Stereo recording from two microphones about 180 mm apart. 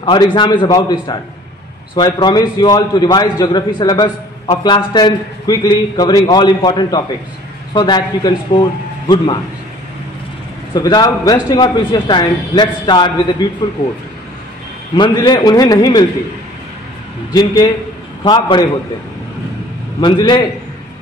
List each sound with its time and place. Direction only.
0.0 s a man's voice: 25° left (ahead or behind)
10.7 s a man's voice: 20° left (ahead or behind)
15.0 s a man's voice: 25° left (ahead or behind)
17.3 s a man's voice: 20° left (ahead or behind)
20.0 s a man's voice: 25° left (ahead or behind)